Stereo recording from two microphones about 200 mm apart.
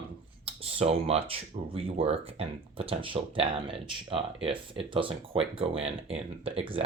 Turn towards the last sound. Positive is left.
turn(degrees=-25)  # may be behind; listen again after turning